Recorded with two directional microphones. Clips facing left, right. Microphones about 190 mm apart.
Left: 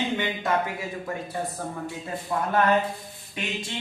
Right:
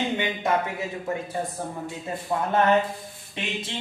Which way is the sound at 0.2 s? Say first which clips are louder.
Right 1 dB; 20° right (ahead or behind).